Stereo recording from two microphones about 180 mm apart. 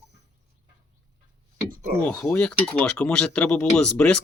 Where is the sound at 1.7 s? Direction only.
50° right (ahead or behind).